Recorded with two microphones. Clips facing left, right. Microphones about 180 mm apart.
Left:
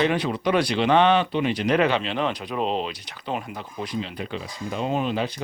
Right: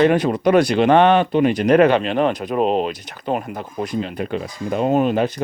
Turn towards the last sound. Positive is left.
turn(degrees=-50)  # may be behind; listen again after turning